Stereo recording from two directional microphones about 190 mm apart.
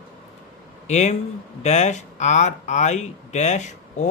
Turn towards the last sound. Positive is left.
turn(degrees=40)  # may be behind; listen again after turning